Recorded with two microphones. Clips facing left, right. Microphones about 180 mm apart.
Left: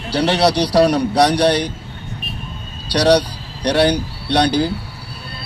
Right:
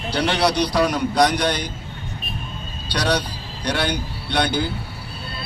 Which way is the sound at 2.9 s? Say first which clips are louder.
Left 9 dB; 35° left (ahead or behind).